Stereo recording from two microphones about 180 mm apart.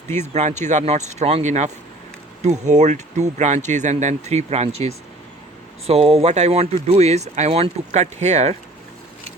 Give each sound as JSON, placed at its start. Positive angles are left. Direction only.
{"t": 0.1, "sound": "speech", "side_deg": -40}